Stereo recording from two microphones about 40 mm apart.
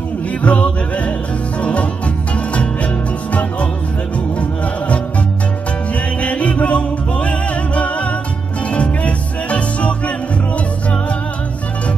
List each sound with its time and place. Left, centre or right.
0.4 s music: left
4.4 s music: left
6.2 s music: left